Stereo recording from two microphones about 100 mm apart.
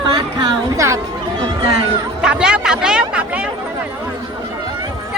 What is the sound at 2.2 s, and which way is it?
Chatter, 5° right (ahead or behind).